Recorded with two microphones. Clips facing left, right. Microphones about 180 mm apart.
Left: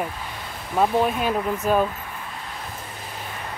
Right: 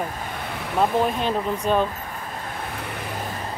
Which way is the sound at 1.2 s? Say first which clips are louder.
Even; 5° left (ahead or behind).